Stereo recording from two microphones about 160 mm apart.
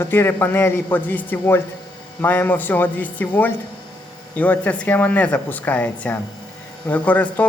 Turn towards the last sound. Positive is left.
turn(degrees=10)  # may be behind; listen again after turning